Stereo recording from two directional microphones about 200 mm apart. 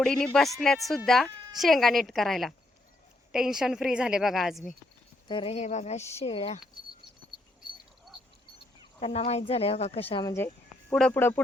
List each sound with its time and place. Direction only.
0.0 s a woman's voice: 5° left (ahead or behind)
5.3 s speech: 30° left (ahead or behind)
6.8 s patter: 25° right (ahead or behind)
9.0 s speech: 30° left (ahead or behind)
10.3 s cricket: 10° left (ahead or behind)
10.9 s speech: 5° left (ahead or behind)